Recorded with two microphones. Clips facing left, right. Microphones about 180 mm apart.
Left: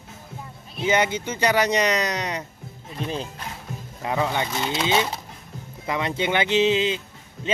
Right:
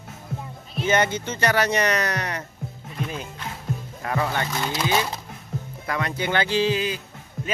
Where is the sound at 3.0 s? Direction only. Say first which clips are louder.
Left 2 dB; 30° left (ahead or behind).